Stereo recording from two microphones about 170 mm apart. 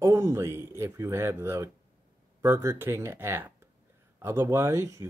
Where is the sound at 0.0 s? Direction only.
20° right (ahead or behind).